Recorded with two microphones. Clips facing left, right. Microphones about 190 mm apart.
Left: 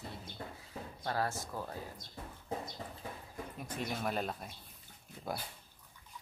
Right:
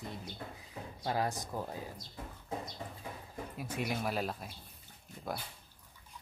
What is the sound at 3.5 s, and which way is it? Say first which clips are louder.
Speech: right 3 dB; 10° right (ahead or behind).